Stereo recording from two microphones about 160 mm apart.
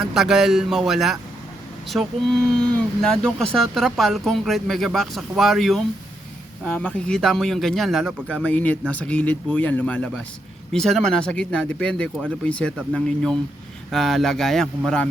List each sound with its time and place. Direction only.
0.0 s speech: centre (ahead or behind)